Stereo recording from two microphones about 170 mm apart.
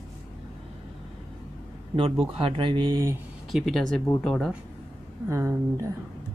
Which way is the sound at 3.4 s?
Centre (ahead or behind).